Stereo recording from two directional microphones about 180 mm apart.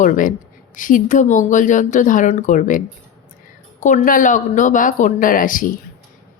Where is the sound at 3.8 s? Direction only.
45° left (ahead or behind).